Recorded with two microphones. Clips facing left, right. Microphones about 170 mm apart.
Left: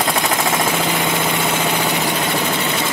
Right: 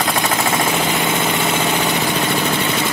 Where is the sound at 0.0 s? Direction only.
Centre (ahead or behind).